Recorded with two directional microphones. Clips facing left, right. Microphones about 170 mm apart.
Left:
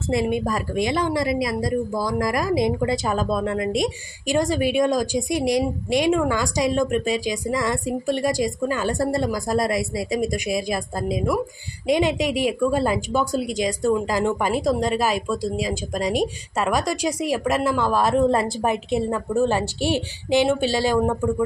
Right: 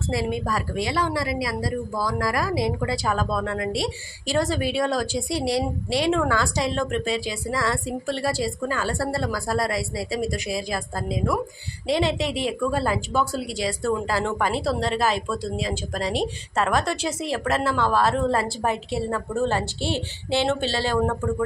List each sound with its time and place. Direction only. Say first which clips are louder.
0.1 s a woman's voice: left 4 dB; 20° left (ahead or behind)